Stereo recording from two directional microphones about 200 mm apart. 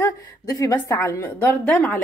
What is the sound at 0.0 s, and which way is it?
A woman's voice, 15° left (ahead or behind).